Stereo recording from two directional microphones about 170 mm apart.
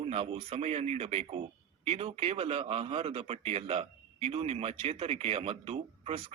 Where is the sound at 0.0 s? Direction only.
35° right (ahead or behind).